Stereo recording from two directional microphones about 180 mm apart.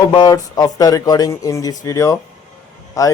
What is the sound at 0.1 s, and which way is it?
Speech, 20° left (ahead or behind).